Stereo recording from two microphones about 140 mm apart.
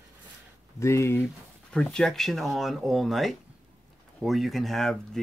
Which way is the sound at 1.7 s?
5° left (ahead or behind).